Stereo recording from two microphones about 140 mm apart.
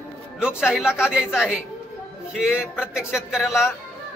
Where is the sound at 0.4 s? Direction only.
5° right (ahead or behind).